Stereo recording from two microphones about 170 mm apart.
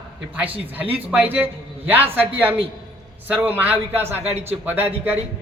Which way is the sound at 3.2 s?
10° right (ahead or behind).